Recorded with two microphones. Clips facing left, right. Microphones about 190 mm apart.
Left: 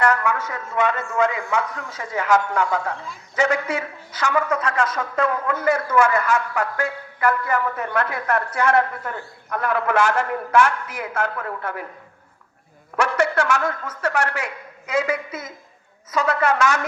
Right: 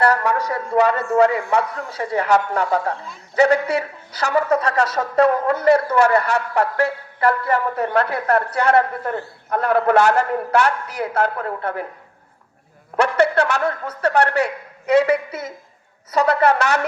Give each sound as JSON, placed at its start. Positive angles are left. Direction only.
{"t": 0.0, "sound": "a woman's voice", "side_deg": -35}
{"t": 13.3, "sound": "a woman's voice", "side_deg": -35}